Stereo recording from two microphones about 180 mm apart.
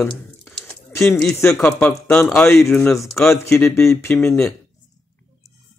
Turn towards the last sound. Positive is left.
turn(degrees=5)  # may be behind; listen again after turning